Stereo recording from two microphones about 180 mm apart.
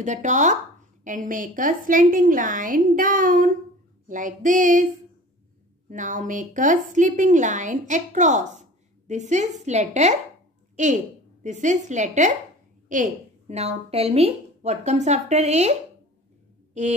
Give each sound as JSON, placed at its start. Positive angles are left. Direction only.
{"t": 0.0, "sound": "speech", "side_deg": -45}
{"t": 5.9, "sound": "speech", "side_deg": -45}
{"t": 16.8, "sound": "speech", "side_deg": -40}